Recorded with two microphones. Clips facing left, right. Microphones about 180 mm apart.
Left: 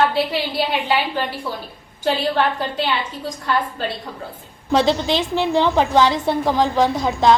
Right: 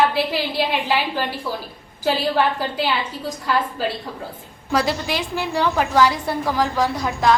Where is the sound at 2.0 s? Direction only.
5° right (ahead or behind).